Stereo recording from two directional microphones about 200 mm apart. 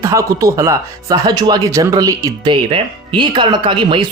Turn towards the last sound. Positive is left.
turn(degrees=-25)  # may be behind; listen again after turning